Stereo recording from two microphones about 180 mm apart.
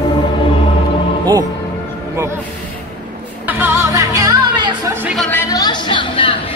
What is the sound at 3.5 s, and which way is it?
Music, 10° right (ahead or behind).